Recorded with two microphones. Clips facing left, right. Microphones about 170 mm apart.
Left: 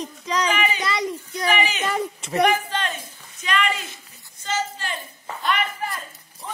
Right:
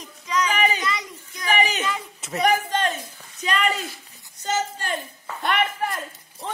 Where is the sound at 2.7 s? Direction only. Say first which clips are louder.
Right 3 dB; 45° right (ahead or behind).